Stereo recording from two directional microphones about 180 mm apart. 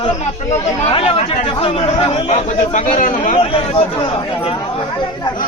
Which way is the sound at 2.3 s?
45° left (ahead or behind).